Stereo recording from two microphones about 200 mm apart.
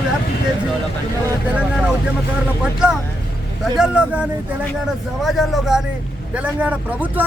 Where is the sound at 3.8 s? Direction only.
5° right (ahead or behind).